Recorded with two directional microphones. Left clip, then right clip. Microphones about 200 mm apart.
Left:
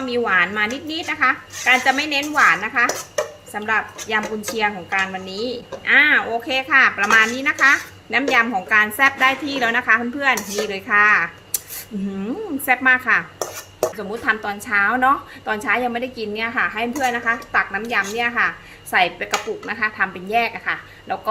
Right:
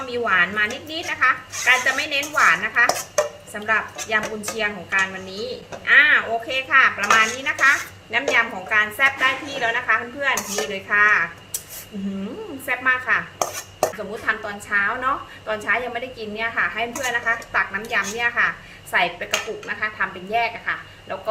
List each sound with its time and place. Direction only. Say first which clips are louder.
0.1 s a woman's voice: left 1 dB; 35° left (ahead or behind)
12.6 s speech: left 4 dB; 45° left (ahead or behind)
14.3 s a woman's voice: left 3 dB; 45° left (ahead or behind)